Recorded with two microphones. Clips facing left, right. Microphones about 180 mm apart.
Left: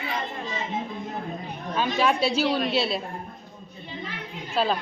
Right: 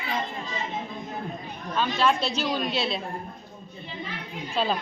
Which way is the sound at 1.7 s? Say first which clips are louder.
Left 1 dB; 15° left (ahead or behind).